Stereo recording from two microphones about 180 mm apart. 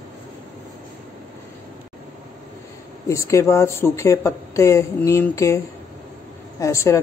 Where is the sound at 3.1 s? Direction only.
15° left (ahead or behind).